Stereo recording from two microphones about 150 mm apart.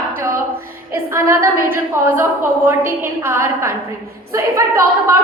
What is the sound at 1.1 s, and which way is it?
A woman's voice, 15° right (ahead or behind).